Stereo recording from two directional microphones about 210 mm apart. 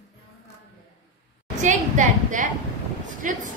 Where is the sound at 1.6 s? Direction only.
35° right (ahead or behind).